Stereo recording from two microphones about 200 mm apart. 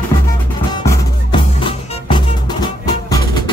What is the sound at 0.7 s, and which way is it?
Music, 20° left (ahead or behind).